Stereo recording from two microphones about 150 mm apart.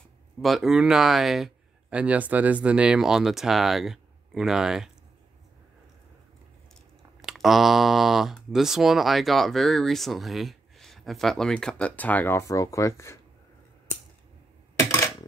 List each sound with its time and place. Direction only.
0.4 s speech: centre (ahead or behind)
7.2 s speech: centre (ahead or behind); by 13.2 s 20° left (ahead or behind)
14.8 s coin: 20° left (ahead or behind)